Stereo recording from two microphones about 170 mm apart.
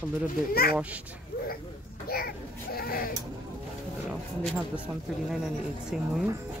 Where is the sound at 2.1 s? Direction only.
60° left (ahead or behind).